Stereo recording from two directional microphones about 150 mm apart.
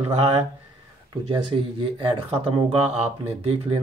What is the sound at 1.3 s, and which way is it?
Speech, 35° right (ahead or behind).